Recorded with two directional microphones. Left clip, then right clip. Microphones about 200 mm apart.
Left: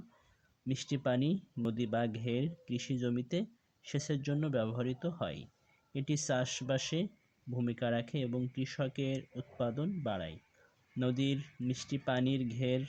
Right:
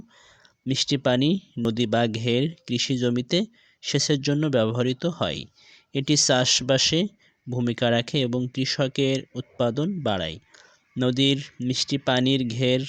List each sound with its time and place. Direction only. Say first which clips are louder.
0.7 s speech: right 12 dB; 40° right (ahead or behind)